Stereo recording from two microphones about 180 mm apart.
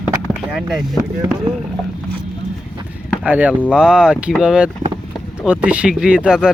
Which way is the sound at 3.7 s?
5° right (ahead or behind).